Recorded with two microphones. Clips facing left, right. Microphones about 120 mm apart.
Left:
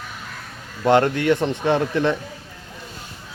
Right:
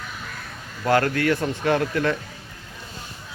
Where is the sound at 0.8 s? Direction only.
25° left (ahead or behind).